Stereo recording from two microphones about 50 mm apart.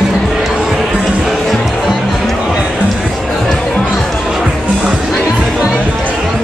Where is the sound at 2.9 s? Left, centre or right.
Centre.